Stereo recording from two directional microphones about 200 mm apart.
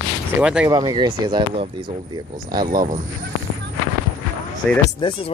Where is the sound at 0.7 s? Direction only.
20° right (ahead or behind).